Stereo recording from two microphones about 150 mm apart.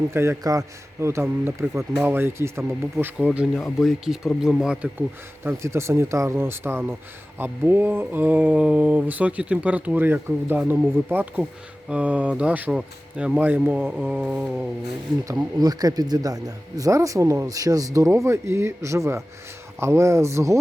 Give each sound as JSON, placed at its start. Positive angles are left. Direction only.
{"t": 0.1, "sound": "a man's voice", "side_deg": -15}
{"t": 15.3, "sound": "speech", "side_deg": -25}